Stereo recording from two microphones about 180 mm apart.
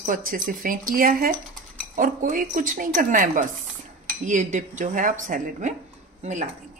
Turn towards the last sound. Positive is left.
turn(degrees=-40)  # may be behind; listen again after turning